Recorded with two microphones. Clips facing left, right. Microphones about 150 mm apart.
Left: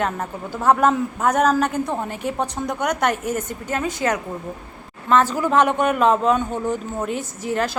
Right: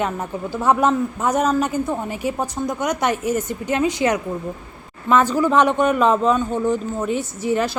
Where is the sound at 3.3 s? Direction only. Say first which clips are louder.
Right 4 dB; 50° left (ahead or behind).